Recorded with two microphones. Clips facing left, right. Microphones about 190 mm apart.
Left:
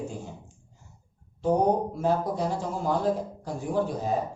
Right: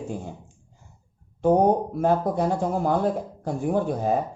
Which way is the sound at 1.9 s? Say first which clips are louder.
Right 4 dB; 55° right (ahead or behind).